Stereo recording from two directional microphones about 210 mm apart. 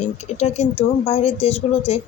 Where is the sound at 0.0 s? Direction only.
30° left (ahead or behind).